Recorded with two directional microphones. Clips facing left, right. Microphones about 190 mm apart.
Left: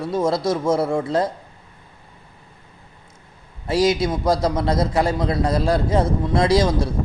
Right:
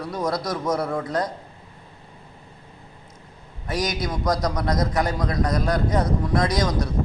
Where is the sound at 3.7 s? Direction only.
30° left (ahead or behind).